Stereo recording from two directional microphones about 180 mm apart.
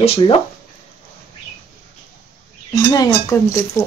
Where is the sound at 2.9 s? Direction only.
20° left (ahead or behind).